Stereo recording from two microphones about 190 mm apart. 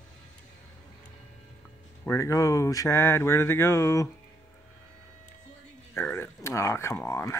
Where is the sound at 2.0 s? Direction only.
15° left (ahead or behind).